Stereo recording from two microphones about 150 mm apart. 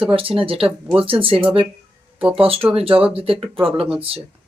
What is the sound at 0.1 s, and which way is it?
Speech, 35° right (ahead or behind).